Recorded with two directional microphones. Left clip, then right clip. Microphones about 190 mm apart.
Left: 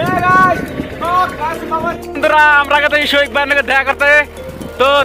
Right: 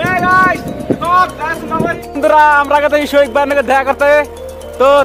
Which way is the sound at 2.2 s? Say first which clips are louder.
Right 1 dB; 5° left (ahead or behind).